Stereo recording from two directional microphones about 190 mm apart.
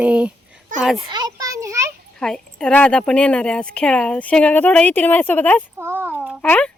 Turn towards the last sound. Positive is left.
turn(degrees=5)  # may be behind; listen again after turning